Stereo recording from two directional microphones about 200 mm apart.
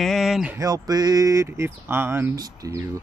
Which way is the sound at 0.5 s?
15° right (ahead or behind).